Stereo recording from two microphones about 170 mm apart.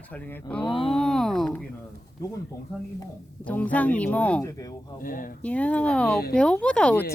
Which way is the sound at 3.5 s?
10° left (ahead or behind).